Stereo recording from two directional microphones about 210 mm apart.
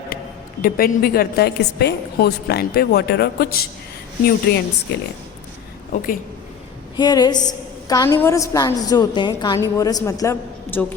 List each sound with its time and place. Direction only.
0.6 s a woman's voice: 45° left (ahead or behind)
6.9 s a woman's voice: 20° left (ahead or behind)